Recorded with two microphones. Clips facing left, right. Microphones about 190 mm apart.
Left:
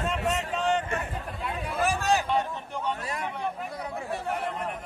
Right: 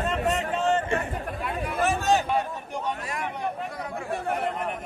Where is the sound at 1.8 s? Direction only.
Centre (ahead or behind).